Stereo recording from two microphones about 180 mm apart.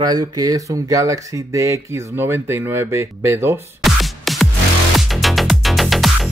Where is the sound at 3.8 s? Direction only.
Centre (ahead or behind).